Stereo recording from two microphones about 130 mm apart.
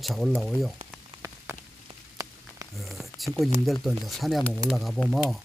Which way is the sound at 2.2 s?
25° right (ahead or behind).